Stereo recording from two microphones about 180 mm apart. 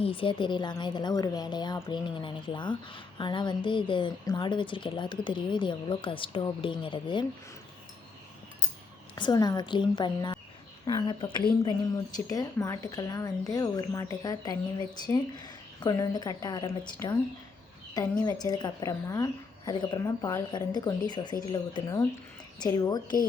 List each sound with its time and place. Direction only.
0.0 s a woman's voice: 30° left (ahead or behind)
9.1 s a woman's voice: 25° left (ahead or behind)